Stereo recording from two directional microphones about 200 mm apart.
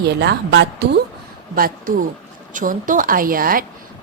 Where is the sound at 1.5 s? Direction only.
45° right (ahead or behind).